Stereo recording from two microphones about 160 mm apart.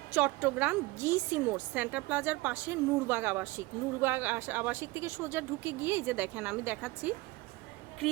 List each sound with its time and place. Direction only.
0.1 s a woman's voice: 10° right (ahead or behind)